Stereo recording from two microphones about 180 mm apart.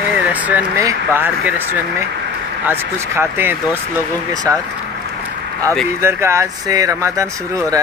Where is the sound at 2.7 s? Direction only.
10° right (ahead or behind).